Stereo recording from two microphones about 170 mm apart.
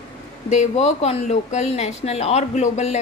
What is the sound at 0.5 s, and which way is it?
A woman's voice, 40° left (ahead or behind).